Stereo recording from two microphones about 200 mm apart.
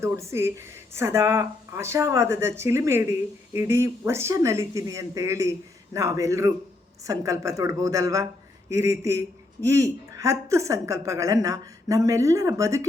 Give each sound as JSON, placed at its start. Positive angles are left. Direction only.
{"t": 0.0, "sound": "speech", "side_deg": -15}